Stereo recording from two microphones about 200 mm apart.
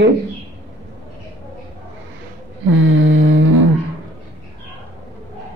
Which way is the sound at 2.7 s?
80° right.